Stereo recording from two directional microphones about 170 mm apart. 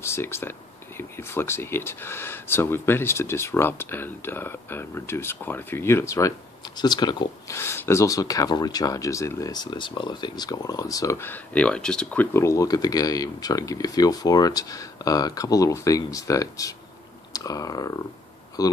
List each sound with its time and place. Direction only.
0.0 s speech: 15° left (ahead or behind)
7.5 s speech: 15° left (ahead or behind)